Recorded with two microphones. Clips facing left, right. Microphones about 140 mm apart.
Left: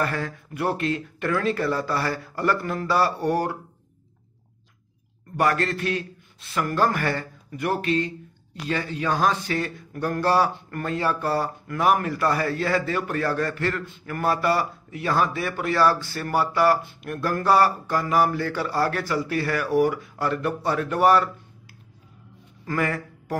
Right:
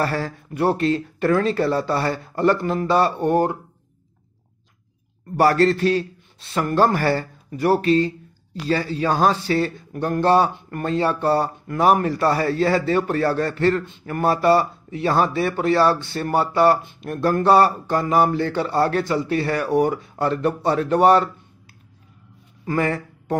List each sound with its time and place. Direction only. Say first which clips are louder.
0.0 s speech: right 3 dB; 30° right (ahead or behind)
5.4 s a man's voice: right 7 dB; 30° right (ahead or behind)
22.7 s speech: right 4 dB; 25° right (ahead or behind)